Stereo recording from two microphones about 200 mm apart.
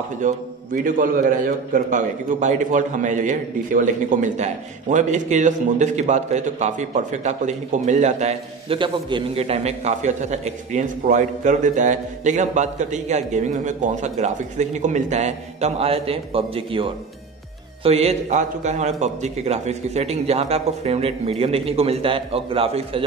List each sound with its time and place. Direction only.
0.8 s a man's voice: 45° right (ahead or behind); by 23.0 s 25° right (ahead or behind)